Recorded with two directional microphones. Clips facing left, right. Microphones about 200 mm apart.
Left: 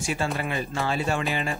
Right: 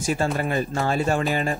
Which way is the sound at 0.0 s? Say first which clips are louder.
Right 4 dB; 45° right (ahead or behind).